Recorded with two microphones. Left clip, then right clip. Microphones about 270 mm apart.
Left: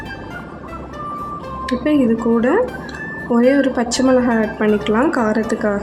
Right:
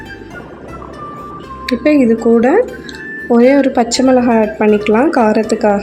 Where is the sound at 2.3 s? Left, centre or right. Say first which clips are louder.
Right 5 dB; centre.